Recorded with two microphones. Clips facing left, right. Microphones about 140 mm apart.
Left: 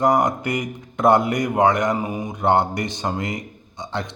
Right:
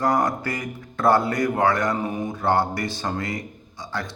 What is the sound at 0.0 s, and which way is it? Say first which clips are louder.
A man's voice: left 3 dB; 20° left (ahead or behind).